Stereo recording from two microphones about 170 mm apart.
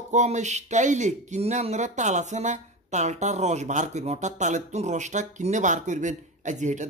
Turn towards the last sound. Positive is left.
turn(degrees=-45)  # may be behind; listen again after turning